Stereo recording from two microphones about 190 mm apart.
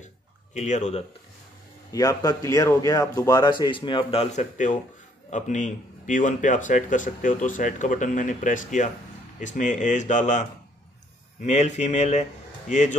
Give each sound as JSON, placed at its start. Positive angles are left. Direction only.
{"t": 0.6, "sound": "speech", "side_deg": 40}
{"t": 1.9, "sound": "a man's voice", "side_deg": 20}
{"t": 11.4, "sound": "speech", "side_deg": 35}